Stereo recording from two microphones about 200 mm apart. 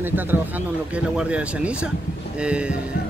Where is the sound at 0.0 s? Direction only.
10° right (ahead or behind).